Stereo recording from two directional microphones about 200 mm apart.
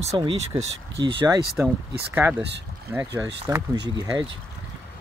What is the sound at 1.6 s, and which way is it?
Speech, 10° right (ahead or behind).